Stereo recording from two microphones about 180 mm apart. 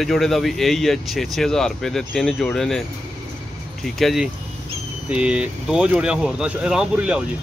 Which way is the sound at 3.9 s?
Centre (ahead or behind).